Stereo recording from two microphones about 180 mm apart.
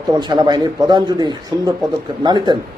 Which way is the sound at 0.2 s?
25° right (ahead or behind).